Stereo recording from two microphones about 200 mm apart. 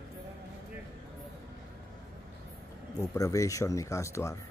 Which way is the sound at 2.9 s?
15° left (ahead or behind).